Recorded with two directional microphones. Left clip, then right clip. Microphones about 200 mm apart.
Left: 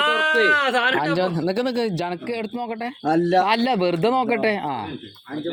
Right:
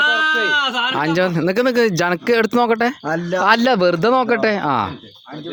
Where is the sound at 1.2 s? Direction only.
35° right (ahead or behind).